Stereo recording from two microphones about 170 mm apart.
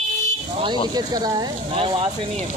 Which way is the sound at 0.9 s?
25° right (ahead or behind).